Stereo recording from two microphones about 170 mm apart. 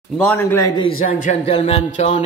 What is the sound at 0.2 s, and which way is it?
Speech, 10° left (ahead or behind).